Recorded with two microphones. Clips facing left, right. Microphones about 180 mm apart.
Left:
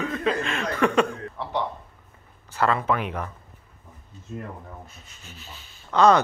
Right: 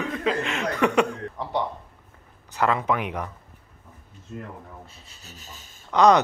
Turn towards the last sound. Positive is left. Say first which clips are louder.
# even
turn(degrees=-15)  # may be behind; listen again after turning